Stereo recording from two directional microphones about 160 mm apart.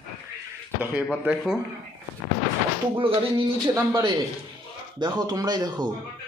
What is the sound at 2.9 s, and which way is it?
Speech, 30° right (ahead or behind).